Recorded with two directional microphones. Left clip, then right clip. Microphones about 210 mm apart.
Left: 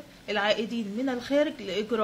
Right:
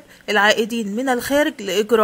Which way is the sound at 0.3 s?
45° right (ahead or behind).